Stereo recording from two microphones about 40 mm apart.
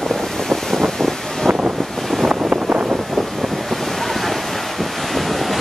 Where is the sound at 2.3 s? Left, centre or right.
Right.